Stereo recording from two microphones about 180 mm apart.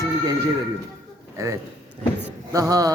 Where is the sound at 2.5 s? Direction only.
20° right (ahead or behind).